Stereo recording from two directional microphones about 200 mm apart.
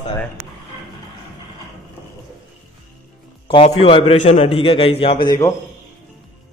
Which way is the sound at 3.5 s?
30° left (ahead or behind).